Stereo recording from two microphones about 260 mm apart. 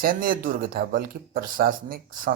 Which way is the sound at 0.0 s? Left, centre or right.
Right.